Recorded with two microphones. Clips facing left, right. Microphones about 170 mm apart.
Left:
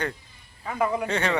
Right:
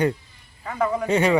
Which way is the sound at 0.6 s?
10° left (ahead or behind).